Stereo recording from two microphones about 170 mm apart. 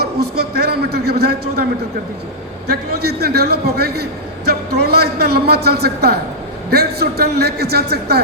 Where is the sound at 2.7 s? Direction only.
70° right (ahead or behind).